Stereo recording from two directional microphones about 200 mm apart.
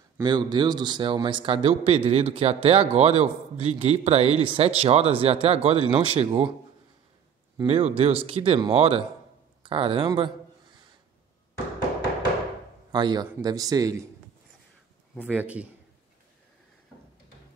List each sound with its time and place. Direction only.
0.2 s speech: 20° right (ahead or behind)
7.6 s speech: 30° right (ahead or behind)
12.9 s speech: 20° right (ahead or behind)
15.3 s a man's voice: 5° right (ahead or behind)